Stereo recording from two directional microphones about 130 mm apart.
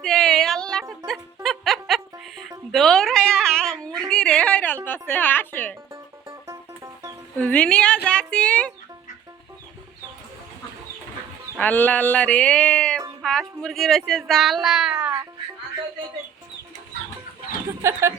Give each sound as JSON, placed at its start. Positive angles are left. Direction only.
{"t": 0.0, "sound": "a sound", "side_deg": 5}
{"t": 1.0, "sound": "music", "side_deg": 0}
{"t": 2.7, "sound": "a sound", "side_deg": 5}
{"t": 4.9, "sound": "music", "side_deg": 15}
{"t": 5.9, "sound": "music", "side_deg": -20}
{"t": 7.3, "sound": "a woman's voice", "side_deg": 10}
{"t": 11.5, "sound": "speech", "side_deg": 15}
{"t": 17.8, "sound": "speech", "side_deg": -20}